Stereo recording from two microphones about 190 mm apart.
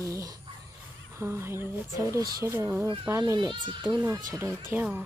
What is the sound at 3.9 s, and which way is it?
Speech, 15° right (ahead or behind).